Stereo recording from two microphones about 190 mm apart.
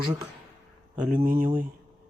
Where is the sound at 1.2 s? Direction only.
45° right (ahead or behind).